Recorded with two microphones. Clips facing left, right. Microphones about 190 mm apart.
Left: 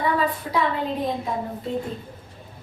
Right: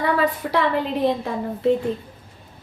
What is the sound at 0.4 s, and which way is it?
Speech, 70° right (ahead or behind).